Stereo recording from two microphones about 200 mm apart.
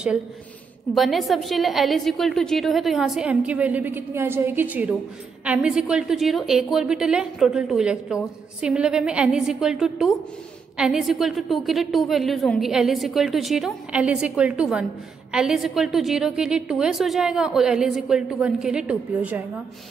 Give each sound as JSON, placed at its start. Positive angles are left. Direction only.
{"t": 0.9, "sound": "a woman's voice", "side_deg": 0}